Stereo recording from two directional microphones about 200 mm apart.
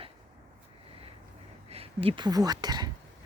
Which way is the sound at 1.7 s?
30° right (ahead or behind).